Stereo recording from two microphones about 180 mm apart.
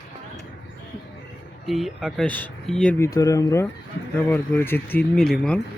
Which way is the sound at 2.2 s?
10° left (ahead or behind).